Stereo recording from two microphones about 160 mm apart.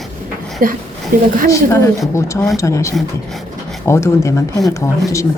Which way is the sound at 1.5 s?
20° left (ahead or behind).